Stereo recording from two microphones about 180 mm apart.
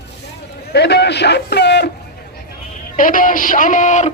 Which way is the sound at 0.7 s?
65° left (ahead or behind).